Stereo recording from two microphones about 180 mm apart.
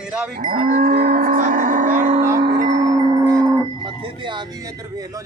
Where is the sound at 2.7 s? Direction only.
20° right (ahead or behind).